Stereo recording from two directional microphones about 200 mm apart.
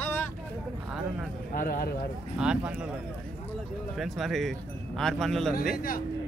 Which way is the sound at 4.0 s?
Centre (ahead or behind).